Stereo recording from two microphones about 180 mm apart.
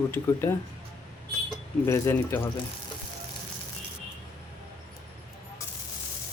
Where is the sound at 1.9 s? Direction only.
15° left (ahead or behind).